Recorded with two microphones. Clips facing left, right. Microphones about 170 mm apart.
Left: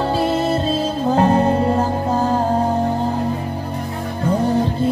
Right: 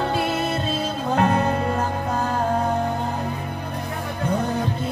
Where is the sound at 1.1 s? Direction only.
30° left (ahead or behind).